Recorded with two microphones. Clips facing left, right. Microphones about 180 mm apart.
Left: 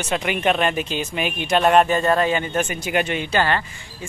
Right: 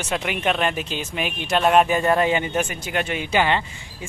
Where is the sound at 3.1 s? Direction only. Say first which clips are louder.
Even; 5° right (ahead or behind).